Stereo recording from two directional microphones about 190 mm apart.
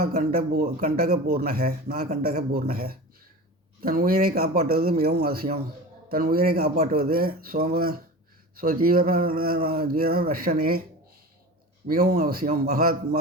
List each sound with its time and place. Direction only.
0.0 s speech: 45° right (ahead or behind)
11.9 s speech: 50° right (ahead or behind)